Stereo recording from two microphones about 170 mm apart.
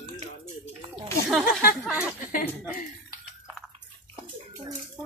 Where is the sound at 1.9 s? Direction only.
10° right (ahead or behind).